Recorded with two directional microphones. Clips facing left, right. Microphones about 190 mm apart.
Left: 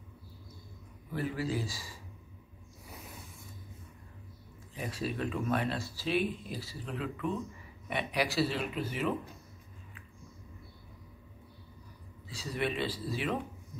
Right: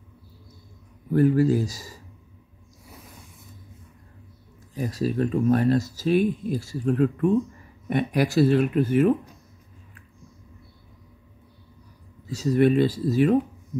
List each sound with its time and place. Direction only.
1.1 s speech: 45° right (ahead or behind)
4.7 s speech: 40° right (ahead or behind)
12.3 s speech: 45° right (ahead or behind)